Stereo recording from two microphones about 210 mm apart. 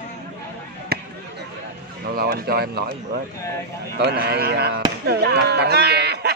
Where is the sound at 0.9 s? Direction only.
45° right (ahead or behind).